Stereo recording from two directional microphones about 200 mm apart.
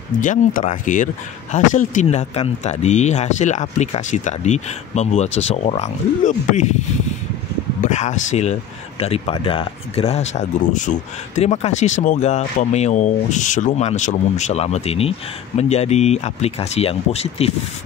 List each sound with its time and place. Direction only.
0.2 s speech: 40° left (ahead or behind)
7.8 s speech: 35° left (ahead or behind)